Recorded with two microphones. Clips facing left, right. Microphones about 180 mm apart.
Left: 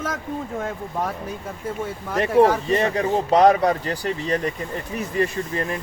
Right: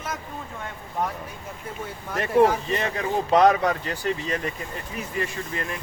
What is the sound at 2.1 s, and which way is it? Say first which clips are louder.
Speech: left 3 dB; 30° left (ahead or behind).